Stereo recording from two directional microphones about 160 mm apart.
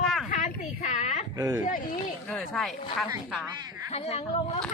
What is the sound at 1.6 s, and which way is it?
Speech, 55° left (ahead or behind).